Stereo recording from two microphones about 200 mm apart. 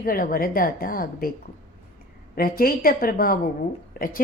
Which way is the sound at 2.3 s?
45° left (ahead or behind).